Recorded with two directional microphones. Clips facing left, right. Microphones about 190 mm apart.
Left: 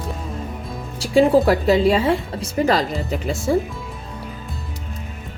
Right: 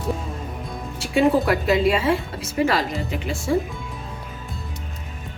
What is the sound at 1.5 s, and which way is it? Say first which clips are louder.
A woman's voice: left 3 dB; 30° left (ahead or behind).